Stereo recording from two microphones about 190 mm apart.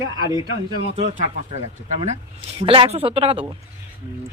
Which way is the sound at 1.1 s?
35° right (ahead or behind).